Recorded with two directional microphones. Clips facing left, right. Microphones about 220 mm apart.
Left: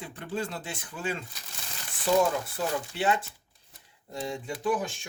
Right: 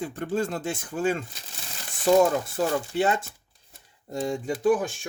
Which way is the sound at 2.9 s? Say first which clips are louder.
Right 4 dB; 45° right (ahead or behind).